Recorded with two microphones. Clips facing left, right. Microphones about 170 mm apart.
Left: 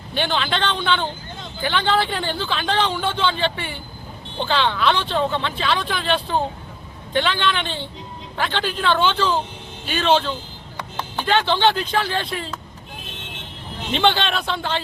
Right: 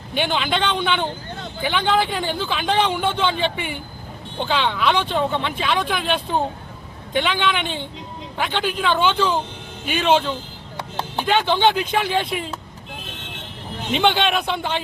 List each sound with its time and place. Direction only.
0.1 s a man's voice: 10° right (ahead or behind)
13.9 s a man's voice: 10° right (ahead or behind)